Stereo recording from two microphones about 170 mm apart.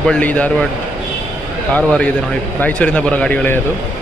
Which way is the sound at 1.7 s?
5° left (ahead or behind).